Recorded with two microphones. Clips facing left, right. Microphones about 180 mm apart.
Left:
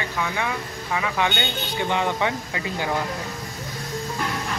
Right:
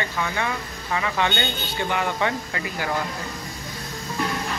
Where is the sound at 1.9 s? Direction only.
20° left (ahead or behind).